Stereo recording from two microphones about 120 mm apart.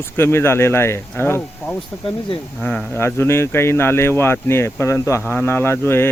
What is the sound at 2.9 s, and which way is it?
Speech, 20° left (ahead or behind).